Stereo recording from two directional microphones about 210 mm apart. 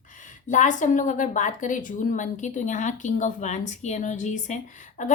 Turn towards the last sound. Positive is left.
turn(degrees=35)  # may be behind; listen again after turning